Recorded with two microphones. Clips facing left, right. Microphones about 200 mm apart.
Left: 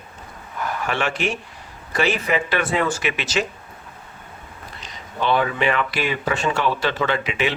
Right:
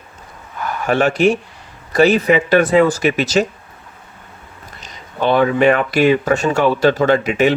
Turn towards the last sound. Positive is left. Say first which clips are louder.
# right 9 dB
turn(degrees=-45)  # may be behind; listen again after turning